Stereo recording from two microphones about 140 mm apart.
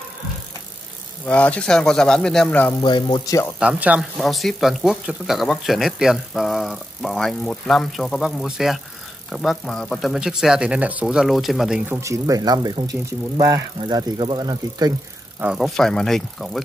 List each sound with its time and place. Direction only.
1.2 s speech: 10° left (ahead or behind)
2.7 s speech: 35° left (ahead or behind)
3.5 s speech: 10° right (ahead or behind)
11.9 s speech: 20° right (ahead or behind)
15.4 s speech: 5° right (ahead or behind)